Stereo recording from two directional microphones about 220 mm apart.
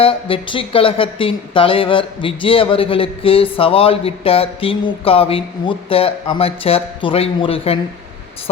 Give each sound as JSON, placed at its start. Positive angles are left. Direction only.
{"t": 0.0, "sound": "speech", "side_deg": 25}